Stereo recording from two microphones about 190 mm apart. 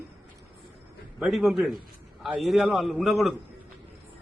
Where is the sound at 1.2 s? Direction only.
Centre (ahead or behind).